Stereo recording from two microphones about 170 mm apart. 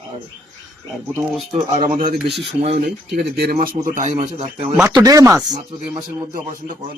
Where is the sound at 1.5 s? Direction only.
45° right (ahead or behind).